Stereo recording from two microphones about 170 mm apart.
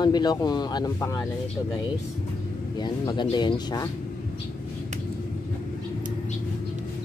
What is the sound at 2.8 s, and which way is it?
Speech, 25° left (ahead or behind).